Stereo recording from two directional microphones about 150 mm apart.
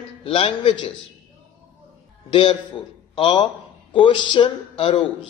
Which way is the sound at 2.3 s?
30° left (ahead or behind).